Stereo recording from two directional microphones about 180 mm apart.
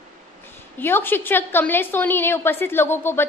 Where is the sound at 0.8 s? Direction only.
10° left (ahead or behind).